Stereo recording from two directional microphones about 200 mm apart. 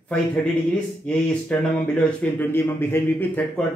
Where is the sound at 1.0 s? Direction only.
5° left (ahead or behind).